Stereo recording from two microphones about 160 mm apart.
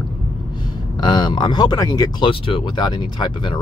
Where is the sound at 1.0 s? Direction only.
30° left (ahead or behind).